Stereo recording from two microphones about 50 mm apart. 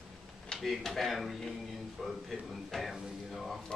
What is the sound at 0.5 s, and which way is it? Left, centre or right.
Speech, centre.